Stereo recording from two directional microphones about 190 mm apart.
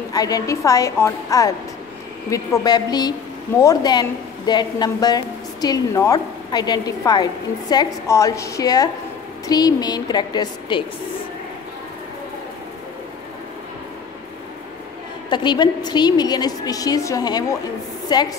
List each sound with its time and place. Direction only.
0.1 s a woman's voice: 20° left (ahead or behind)
15.2 s a woman's voice: 25° left (ahead or behind)